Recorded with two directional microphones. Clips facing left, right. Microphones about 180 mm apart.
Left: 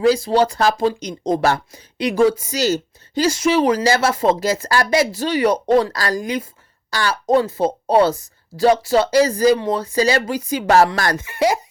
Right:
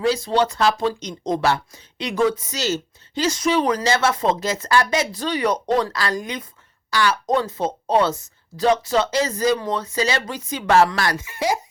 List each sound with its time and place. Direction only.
0.2 s speech: 35° left (ahead or behind); by 11.6 s 65° left (ahead or behind)